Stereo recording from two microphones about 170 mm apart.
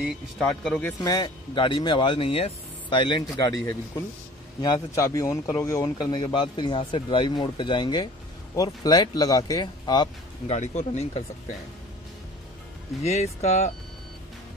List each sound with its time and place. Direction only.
0.0 s speech: 5° left (ahead or behind)
1.0 s speech: 25° left (ahead or behind)
10.5 s speech: 40° left (ahead or behind)
13.0 s speech: 40° left (ahead or behind)